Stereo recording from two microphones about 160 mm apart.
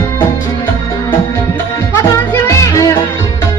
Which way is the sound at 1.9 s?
15° left (ahead or behind).